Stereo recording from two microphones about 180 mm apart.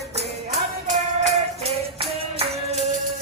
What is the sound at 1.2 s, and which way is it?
Music, 35° right (ahead or behind).